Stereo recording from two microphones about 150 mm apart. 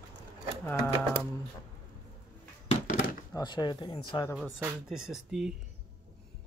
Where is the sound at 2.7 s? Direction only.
60° left (ahead or behind).